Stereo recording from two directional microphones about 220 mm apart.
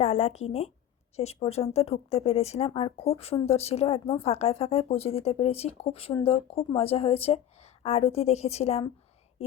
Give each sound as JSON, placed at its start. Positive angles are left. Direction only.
{"t": 0.0, "sound": "speech", "side_deg": 30}